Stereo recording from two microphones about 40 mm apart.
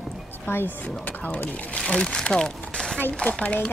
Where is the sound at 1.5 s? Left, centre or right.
Left.